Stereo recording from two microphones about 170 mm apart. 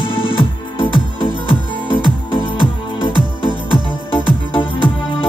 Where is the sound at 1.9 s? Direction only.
30° left (ahead or behind).